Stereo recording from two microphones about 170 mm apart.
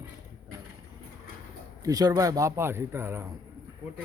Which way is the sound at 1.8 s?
20° right (ahead or behind).